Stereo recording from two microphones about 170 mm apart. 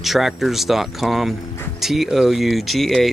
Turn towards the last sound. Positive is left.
turn(degrees=0)  # may be behind; listen again after turning